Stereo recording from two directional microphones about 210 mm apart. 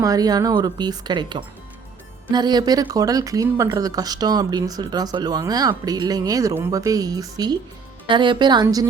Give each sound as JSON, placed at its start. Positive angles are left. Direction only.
{"t": 0.0, "sound": "speech", "side_deg": -15}